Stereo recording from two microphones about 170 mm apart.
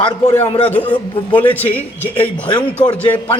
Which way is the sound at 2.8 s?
25° left (ahead or behind).